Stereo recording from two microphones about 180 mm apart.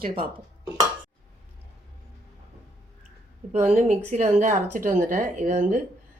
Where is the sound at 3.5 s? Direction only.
40° right (ahead or behind).